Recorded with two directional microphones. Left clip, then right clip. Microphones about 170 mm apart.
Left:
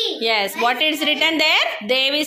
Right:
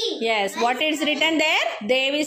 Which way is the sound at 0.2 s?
15° right (ahead or behind).